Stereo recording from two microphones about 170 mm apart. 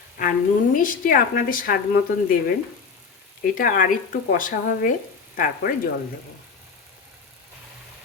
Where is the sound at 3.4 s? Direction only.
55° left (ahead or behind).